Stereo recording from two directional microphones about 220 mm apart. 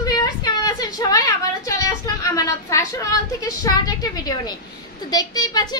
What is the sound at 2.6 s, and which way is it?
A woman's voice, 15° left (ahead or behind).